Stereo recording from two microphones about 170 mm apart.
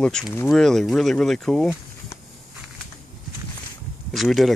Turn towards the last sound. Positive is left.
turn(degrees=0)  # may be behind; listen again after turning